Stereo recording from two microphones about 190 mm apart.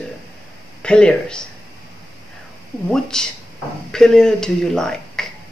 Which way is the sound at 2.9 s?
5° left (ahead or behind).